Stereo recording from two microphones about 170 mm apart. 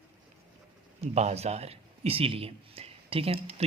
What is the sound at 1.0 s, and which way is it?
Speech, 40° right (ahead or behind).